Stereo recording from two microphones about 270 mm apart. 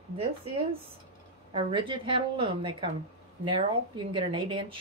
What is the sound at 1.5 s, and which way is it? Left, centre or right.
A woman's voice, centre.